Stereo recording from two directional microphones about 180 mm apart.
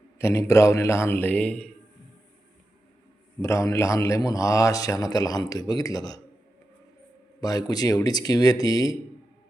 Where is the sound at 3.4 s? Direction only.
15° left (ahead or behind).